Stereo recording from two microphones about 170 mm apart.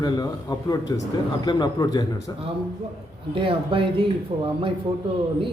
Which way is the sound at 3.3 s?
30° right (ahead or behind).